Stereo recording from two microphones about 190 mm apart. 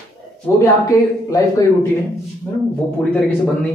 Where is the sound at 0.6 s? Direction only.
20° left (ahead or behind).